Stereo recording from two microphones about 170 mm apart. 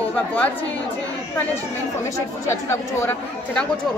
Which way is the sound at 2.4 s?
15° left (ahead or behind).